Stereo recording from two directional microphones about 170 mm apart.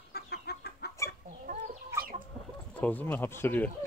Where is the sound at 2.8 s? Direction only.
10° left (ahead or behind).